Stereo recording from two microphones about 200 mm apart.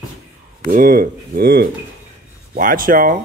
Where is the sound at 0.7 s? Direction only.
45° right (ahead or behind).